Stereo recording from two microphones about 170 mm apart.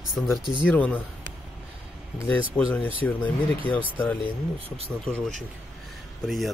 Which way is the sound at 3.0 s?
10° left (ahead or behind).